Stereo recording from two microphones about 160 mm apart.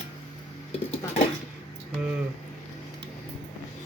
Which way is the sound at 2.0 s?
5° right (ahead or behind).